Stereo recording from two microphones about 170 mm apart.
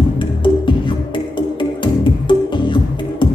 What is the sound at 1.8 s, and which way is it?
Music, 30° left (ahead or behind).